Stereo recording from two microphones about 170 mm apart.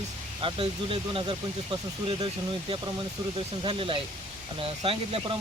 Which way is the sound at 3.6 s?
30° right (ahead or behind).